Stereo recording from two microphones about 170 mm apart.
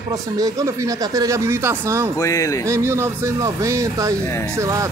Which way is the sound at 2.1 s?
20° left (ahead or behind).